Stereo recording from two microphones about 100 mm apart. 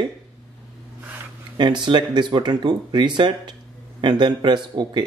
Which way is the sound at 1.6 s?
50° right (ahead or behind).